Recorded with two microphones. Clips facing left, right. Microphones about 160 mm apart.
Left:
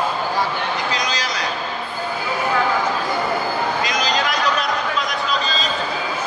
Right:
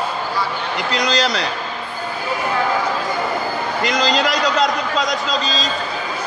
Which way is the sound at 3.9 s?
85° right.